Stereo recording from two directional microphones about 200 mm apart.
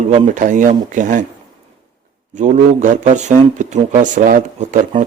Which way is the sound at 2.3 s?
40° right (ahead or behind).